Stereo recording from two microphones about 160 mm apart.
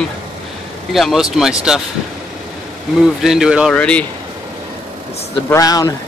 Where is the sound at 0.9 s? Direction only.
Centre (ahead or behind).